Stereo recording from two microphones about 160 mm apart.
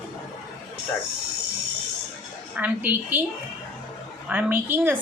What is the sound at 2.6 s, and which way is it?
Speech, 10° right (ahead or behind).